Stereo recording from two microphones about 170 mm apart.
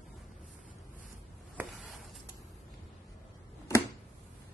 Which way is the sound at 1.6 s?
5° right (ahead or behind).